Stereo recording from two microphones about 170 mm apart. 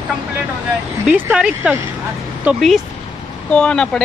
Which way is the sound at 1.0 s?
10° right (ahead or behind).